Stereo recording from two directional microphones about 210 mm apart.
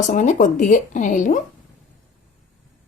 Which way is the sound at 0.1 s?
35° left (ahead or behind).